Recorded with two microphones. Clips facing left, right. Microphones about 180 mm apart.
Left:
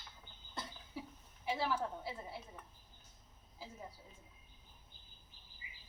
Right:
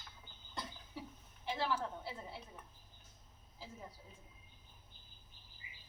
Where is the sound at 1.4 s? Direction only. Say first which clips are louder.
Left 1 dB; 5° left (ahead or behind).